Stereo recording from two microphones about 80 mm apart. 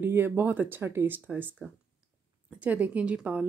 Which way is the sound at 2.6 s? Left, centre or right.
Centre.